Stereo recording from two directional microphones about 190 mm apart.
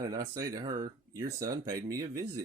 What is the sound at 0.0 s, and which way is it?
Speech, 20° right (ahead or behind).